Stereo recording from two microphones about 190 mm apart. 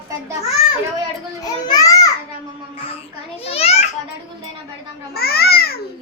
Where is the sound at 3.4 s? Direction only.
30° left (ahead or behind).